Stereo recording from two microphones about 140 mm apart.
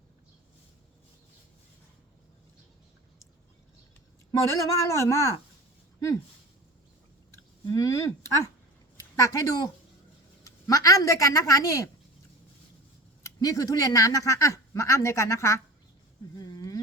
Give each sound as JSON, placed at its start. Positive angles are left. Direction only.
{"t": 4.3, "sound": "speech", "side_deg": 20}
{"t": 7.7, "sound": "speech", "side_deg": 25}
{"t": 13.2, "sound": "speech", "side_deg": 25}
{"t": 16.4, "sound": "a sound", "side_deg": 30}